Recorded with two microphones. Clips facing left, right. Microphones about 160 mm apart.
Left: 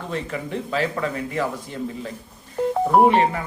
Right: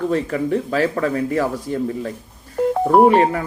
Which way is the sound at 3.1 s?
45° right (ahead or behind).